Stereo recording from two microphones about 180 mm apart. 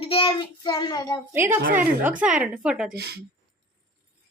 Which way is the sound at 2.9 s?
60° right (ahead or behind).